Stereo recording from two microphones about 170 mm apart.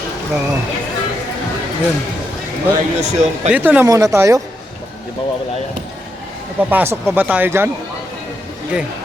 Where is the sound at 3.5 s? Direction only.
10° right (ahead or behind).